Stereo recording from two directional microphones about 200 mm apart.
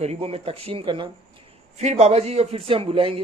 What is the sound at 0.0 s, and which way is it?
A man's voice, 30° right (ahead or behind).